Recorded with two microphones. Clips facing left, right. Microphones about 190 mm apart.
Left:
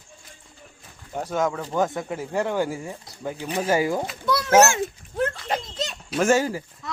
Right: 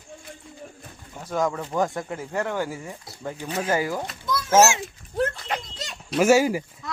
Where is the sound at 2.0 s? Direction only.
15° left (ahead or behind).